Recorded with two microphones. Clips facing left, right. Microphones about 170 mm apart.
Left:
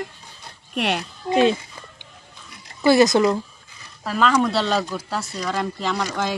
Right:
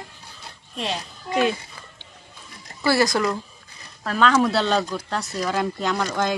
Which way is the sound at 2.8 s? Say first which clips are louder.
Left 5 dB; 20° left (ahead or behind).